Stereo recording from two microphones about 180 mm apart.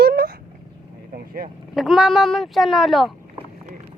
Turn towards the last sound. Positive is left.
turn(degrees=0)  # may be behind; listen again after turning